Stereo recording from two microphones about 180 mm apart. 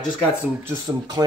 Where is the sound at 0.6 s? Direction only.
20° right (ahead or behind).